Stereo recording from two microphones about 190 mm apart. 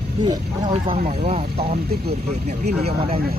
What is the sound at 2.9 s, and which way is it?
Speech, 30° right (ahead or behind).